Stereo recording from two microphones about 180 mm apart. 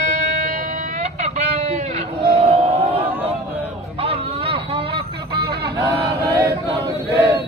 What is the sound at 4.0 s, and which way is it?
Vehicle, 30° right (ahead or behind).